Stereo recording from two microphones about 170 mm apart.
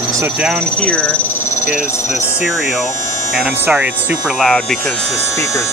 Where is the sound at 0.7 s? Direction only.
5° left (ahead or behind).